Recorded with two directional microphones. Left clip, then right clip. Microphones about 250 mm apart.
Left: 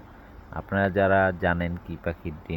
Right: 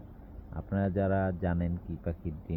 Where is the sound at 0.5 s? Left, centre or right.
Left.